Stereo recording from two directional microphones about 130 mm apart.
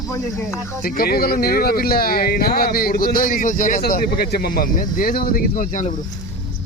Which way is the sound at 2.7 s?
90° left.